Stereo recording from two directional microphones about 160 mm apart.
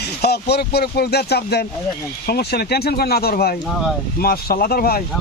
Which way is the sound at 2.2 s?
75° left (ahead or behind).